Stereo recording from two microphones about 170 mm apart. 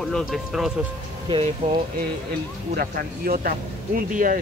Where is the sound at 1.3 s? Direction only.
30° right (ahead or behind).